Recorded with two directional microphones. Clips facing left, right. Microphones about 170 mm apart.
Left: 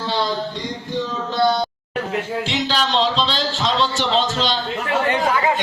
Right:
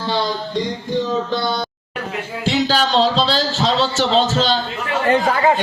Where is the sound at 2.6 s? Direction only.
40° right (ahead or behind).